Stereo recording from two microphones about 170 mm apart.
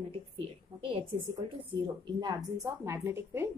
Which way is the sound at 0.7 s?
35° right (ahead or behind).